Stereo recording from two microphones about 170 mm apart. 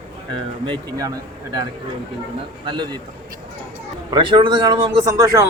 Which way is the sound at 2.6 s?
25° right (ahead or behind).